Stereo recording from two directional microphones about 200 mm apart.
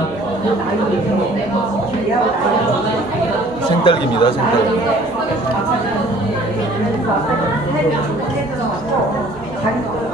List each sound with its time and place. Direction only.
3.8 s speech: 25° left (ahead or behind)